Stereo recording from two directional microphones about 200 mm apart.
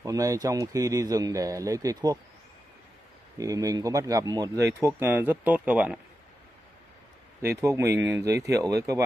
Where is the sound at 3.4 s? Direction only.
15° right (ahead or behind).